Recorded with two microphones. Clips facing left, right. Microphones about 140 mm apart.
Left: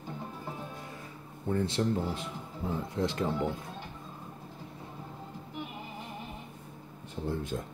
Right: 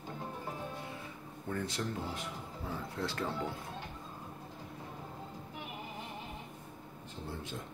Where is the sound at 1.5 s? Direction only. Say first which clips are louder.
Left 8 dB; 25° left (ahead or behind).